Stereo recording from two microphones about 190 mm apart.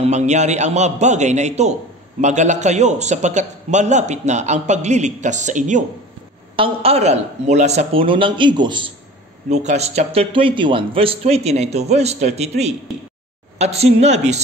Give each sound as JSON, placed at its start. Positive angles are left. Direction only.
{"t": 0.0, "sound": "a man's voice", "side_deg": -35}
{"t": 6.5, "sound": "speech", "side_deg": -30}
{"t": 9.5, "sound": "a man's voice", "side_deg": -35}